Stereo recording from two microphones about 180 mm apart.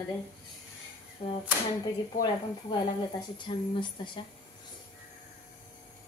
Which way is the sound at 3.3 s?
25° left (ahead or behind).